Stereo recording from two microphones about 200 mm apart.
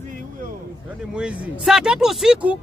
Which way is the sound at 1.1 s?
5° right (ahead or behind).